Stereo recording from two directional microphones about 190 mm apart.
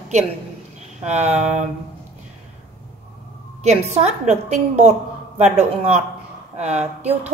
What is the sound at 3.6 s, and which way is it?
A woman's voice, 35° right (ahead or behind).